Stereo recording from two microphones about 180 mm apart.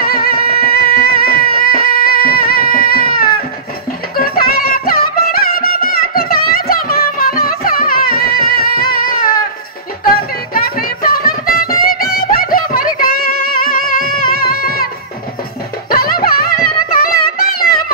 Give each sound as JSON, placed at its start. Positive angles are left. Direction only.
{"t": 0.0, "sound": "music", "side_deg": 55}
{"t": 15.9, "sound": "music", "side_deg": 55}